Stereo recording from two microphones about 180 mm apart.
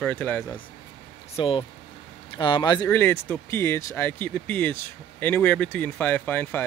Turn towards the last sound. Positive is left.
turn(degrees=10)  # may be behind; listen again after turning